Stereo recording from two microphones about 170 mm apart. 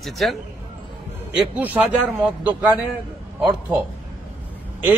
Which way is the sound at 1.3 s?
10° right (ahead or behind).